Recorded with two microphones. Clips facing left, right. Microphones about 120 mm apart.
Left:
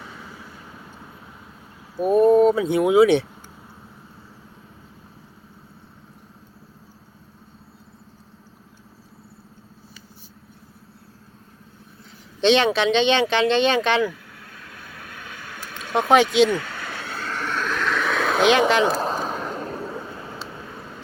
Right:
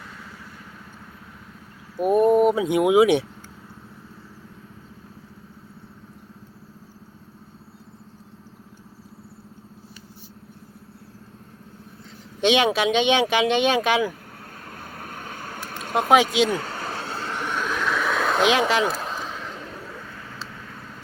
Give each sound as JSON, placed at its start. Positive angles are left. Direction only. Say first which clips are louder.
{"t": 2.0, "sound": "speech", "louder": "left 2 dB", "side_deg": -10}
{"t": 12.4, "sound": "speech", "louder": "left 2 dB", "side_deg": -10}
{"t": 14.6, "sound": "vehicle", "louder": "right 4 dB", "side_deg": -45}
{"t": 16.0, "sound": "speech", "louder": "left 2 dB", "side_deg": -5}
{"t": 16.6, "sound": "vehicle", "louder": "right 1 dB", "side_deg": -35}
{"t": 18.9, "sound": "a sound", "louder": "left 5 dB", "side_deg": 35}
{"t": 20.4, "sound": "vehicle", "louder": "left 3 dB", "side_deg": 25}